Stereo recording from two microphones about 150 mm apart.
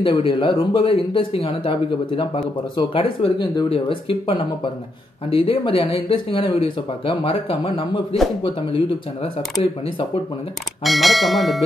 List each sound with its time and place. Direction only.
0.0 s speech: 35° left (ahead or behind)
10.8 s speech: centre (ahead or behind)